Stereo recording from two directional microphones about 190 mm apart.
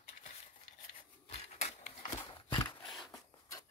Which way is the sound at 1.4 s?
30° left (ahead or behind).